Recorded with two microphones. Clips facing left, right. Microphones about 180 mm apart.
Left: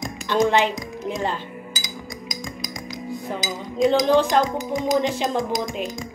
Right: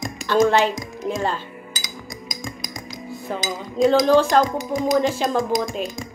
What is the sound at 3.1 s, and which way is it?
Speech, 15° left (ahead or behind).